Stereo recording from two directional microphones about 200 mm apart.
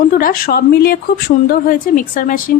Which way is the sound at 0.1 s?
45° left (ahead or behind).